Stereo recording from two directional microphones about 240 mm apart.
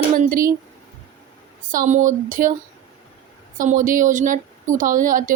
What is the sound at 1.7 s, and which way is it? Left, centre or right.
Speech, right.